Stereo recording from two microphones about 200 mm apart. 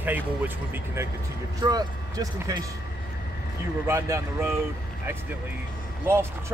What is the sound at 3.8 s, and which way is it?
Speech, 15° right (ahead or behind).